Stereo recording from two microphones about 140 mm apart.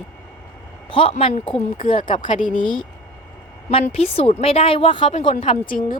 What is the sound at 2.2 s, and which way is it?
Speech, 70° left (ahead or behind).